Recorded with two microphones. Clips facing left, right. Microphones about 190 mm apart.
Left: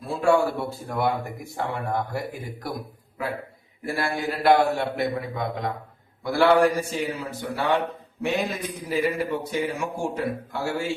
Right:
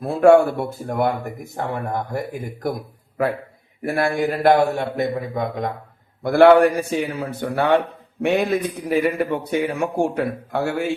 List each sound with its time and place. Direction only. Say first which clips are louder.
0.0 s a man's voice: right 8 dB; 60° right (ahead or behind)
3.8 s a man's voice: right 7 dB; 55° right (ahead or behind)
6.2 s a man's voice: right 7 dB; 60° right (ahead or behind)